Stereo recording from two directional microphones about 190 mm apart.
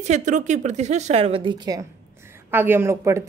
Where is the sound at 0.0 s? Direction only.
40° right (ahead or behind).